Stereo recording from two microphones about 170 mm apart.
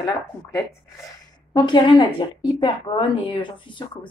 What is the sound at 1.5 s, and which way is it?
Speech, 25° left (ahead or behind).